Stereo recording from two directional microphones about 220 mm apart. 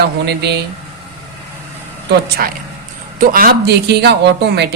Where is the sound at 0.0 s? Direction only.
50° right (ahead or behind).